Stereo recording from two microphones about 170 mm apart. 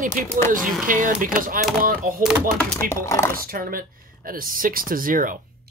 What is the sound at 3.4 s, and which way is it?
Speech, 60° right (ahead or behind).